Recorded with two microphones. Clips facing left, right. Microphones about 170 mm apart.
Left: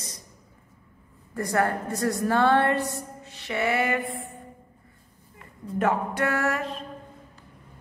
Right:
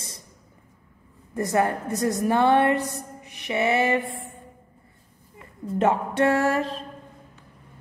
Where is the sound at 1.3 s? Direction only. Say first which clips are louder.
Right 2 dB; 20° right (ahead or behind).